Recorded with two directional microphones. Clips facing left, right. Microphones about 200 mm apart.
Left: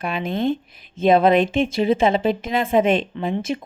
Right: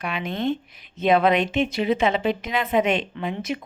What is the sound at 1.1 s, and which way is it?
A woman's voice, 30° left (ahead or behind).